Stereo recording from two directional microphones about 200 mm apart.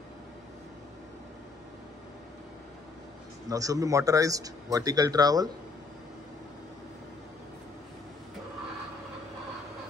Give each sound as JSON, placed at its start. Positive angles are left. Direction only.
{"t": 3.4, "sound": "a man's voice", "side_deg": -15}